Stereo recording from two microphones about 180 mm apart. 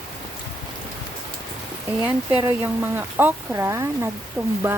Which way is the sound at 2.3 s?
10° right (ahead or behind).